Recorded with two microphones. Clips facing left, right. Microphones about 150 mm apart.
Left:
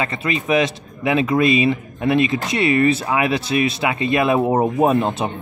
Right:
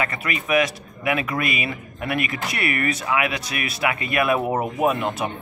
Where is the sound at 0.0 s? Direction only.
25° left (ahead or behind).